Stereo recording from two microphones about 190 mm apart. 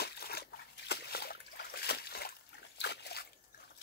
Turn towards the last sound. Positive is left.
turn(degrees=60)  # may be behind; listen again after turning